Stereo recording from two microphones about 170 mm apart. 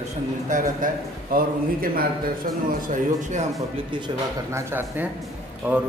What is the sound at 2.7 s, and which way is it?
Speech, 50° right (ahead or behind).